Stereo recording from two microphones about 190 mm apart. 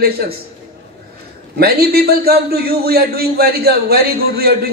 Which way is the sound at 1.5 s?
55° right (ahead or behind).